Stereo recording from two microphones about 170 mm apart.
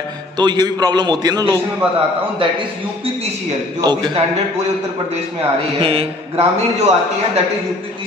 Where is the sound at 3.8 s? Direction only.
20° right (ahead or behind).